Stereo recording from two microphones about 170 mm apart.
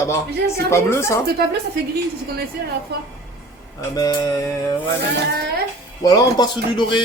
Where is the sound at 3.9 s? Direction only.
20° left (ahead or behind).